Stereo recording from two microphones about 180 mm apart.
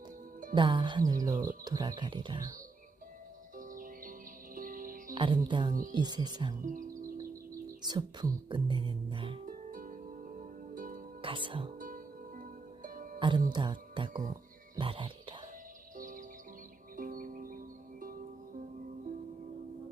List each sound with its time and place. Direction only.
0.5 s speech: 25° right (ahead or behind)
3.6 s music: 50° right (ahead or behind)
5.1 s speech: 25° right (ahead or behind)
6.6 s music: 45° right (ahead or behind)
7.8 s speech: 25° right (ahead or behind)
9.5 s music: 50° right (ahead or behind)
11.2 s speech: 30° right (ahead or behind)
12.4 s music: 50° right (ahead or behind)
13.1 s speech: 25° right (ahead or behind)
16.0 s music: 50° right (ahead or behind)